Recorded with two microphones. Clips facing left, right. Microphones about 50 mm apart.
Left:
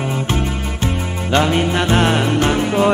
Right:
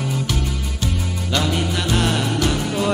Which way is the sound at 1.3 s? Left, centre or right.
Left.